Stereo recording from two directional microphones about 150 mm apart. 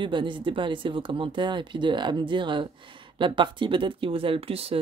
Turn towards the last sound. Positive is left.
turn(degrees=-40)  # may be behind; listen again after turning